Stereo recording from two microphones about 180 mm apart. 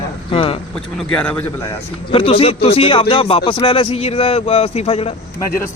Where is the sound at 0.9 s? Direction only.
5° left (ahead or behind).